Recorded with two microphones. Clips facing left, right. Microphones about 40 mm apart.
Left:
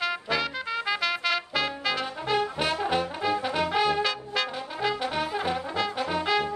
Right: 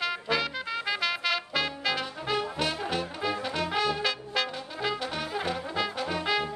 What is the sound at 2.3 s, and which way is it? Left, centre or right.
Trombone, centre.